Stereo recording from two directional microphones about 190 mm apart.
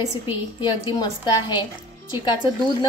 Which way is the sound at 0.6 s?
25° left (ahead or behind).